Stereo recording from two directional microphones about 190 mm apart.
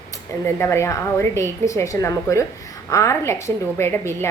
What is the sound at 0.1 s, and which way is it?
Speech, 15° left (ahead or behind).